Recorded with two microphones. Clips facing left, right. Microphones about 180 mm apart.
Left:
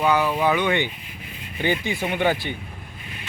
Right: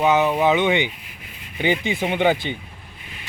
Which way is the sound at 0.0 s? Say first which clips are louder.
Right 3 dB; 20° right (ahead or behind).